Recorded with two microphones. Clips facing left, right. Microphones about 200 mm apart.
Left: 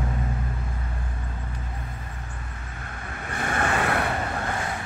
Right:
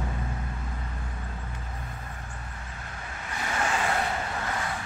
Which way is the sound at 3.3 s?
55° left (ahead or behind).